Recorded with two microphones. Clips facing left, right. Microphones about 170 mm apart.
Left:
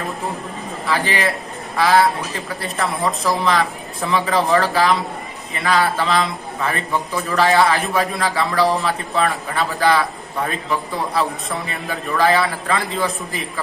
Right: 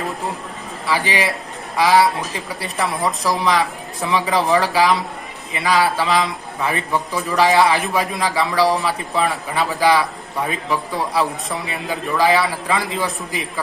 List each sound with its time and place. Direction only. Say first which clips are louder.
0.9 s speech: even; 15° right (ahead or behind)
11.7 s speech: right 3 dB; 15° right (ahead or behind)